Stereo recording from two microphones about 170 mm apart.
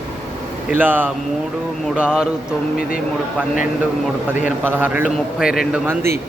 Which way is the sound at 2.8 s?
55° left (ahead or behind).